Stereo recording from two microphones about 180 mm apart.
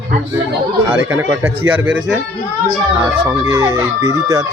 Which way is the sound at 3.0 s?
15° right (ahead or behind).